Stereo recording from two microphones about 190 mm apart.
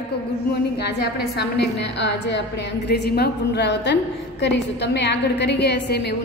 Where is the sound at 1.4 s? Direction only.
65° left (ahead or behind).